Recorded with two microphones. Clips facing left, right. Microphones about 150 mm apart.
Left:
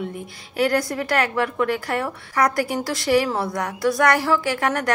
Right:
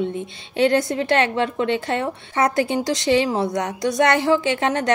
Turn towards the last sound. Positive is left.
turn(degrees=-25)  # may be behind; listen again after turning